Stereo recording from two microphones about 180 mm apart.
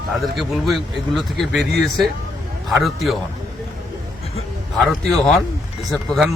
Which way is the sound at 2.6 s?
Centre (ahead or behind).